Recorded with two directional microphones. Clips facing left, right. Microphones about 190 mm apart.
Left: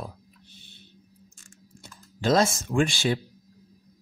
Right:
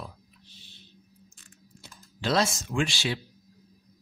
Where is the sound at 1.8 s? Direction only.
45° left (ahead or behind).